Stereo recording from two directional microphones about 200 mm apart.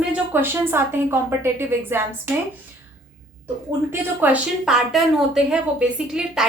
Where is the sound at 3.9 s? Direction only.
5° right (ahead or behind).